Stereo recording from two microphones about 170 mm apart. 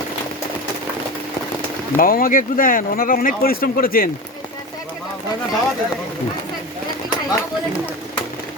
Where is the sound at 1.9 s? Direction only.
55° left (ahead or behind).